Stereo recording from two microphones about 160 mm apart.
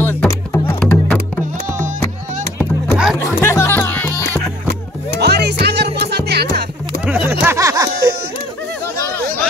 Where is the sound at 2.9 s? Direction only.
5° right (ahead or behind).